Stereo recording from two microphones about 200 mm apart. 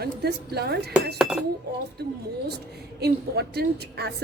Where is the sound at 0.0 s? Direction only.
55° right (ahead or behind).